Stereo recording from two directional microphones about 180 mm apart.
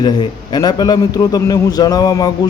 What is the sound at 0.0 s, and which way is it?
A man's voice, 25° left (ahead or behind).